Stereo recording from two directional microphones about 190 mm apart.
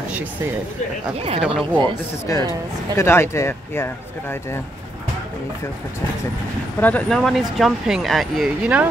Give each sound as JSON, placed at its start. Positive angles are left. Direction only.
{"t": 1.1, "sound": "speech", "side_deg": -30}
{"t": 1.4, "sound": "speech", "side_deg": 0}
{"t": 1.8, "sound": "speech", "side_deg": 15}
{"t": 6.8, "sound": "speech", "side_deg": 5}